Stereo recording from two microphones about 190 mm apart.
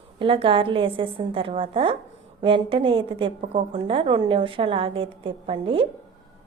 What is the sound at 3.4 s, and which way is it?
Speech, 40° right (ahead or behind).